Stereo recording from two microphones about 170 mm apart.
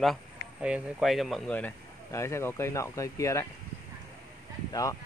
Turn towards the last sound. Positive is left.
turn(degrees=20)  # may be behind; listen again after turning